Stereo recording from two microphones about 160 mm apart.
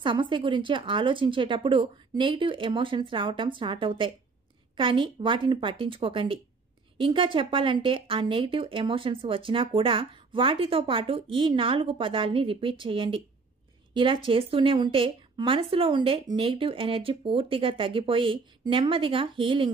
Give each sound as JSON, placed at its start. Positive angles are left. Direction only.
{"t": 0.0, "sound": "a woman's voice", "side_deg": -30}